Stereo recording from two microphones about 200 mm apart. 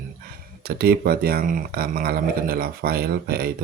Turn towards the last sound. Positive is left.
turn(degrees=-50)  # may be behind; listen again after turning